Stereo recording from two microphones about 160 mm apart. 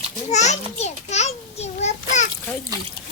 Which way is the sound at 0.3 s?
45° left (ahead or behind).